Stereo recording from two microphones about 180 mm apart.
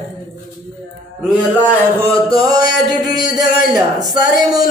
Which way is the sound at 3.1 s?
50° left (ahead or behind).